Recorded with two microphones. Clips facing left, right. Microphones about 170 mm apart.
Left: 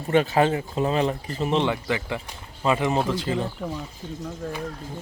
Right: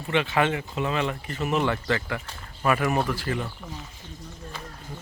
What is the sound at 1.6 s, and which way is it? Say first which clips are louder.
Speech: left 1 dB; 15° left (ahead or behind).